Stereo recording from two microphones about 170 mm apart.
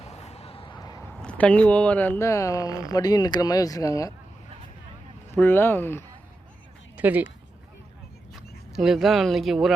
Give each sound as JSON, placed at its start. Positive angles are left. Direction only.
{"t": 0.0, "sound": "a sound", "side_deg": 40}
{"t": 1.1, "sound": "speech", "side_deg": 5}
{"t": 5.3, "sound": "speech", "side_deg": 10}
{"t": 6.9, "sound": "speech", "side_deg": -10}